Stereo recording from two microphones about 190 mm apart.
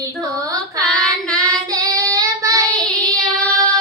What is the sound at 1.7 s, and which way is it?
Child singing, 20° right (ahead or behind).